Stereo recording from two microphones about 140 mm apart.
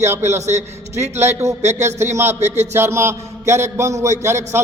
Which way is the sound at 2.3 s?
55° right (ahead or behind).